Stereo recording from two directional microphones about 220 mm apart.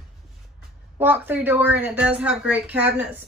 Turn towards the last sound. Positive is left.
turn(degrees=-10)  # may be behind; listen again after turning